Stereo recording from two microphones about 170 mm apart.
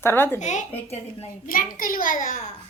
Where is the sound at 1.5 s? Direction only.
55° left (ahead or behind).